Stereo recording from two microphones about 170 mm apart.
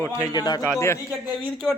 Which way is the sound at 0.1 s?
20° left (ahead or behind).